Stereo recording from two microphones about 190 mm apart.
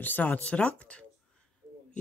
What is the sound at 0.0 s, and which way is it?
Speech, 10° left (ahead or behind).